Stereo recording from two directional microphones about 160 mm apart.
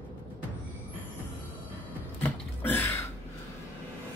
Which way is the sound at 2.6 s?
10° left (ahead or behind).